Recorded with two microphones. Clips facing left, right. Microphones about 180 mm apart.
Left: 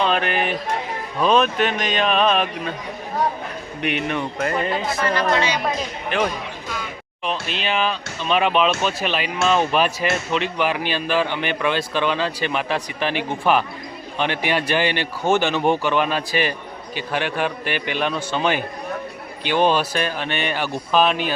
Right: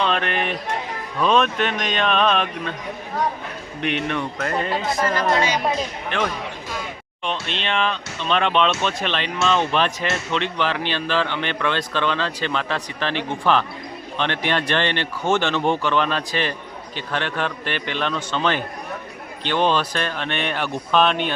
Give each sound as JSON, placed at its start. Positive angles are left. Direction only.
{"t": 0.0, "sound": "speech", "side_deg": 5}
{"t": 3.8, "sound": "speech", "side_deg": 5}
{"t": 4.7, "sound": "speech", "side_deg": -40}
{"t": 6.1, "sound": "speech", "side_deg": 5}